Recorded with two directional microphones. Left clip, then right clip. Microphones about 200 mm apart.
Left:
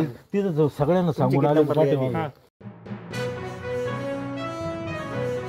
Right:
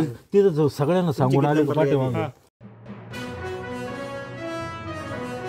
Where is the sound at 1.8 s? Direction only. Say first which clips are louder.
Right 1 dB; 20° right (ahead or behind).